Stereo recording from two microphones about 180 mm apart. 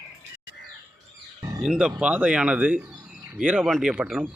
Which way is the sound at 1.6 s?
5° right (ahead or behind).